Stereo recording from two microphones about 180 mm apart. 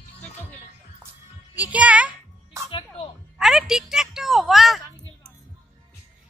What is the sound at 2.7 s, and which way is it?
Music, 30° left (ahead or behind).